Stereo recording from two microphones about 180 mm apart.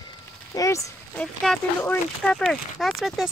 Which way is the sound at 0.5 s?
15° left (ahead or behind).